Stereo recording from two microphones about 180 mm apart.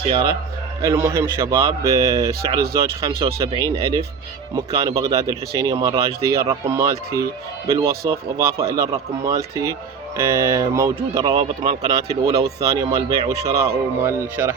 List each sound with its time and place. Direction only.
0.8 s a man's voice: 15° right (ahead or behind)